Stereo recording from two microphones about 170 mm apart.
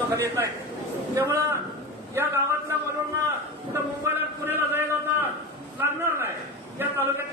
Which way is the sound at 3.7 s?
15° right (ahead or behind).